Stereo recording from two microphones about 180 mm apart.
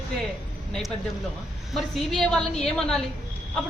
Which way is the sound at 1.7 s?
Centre (ahead or behind).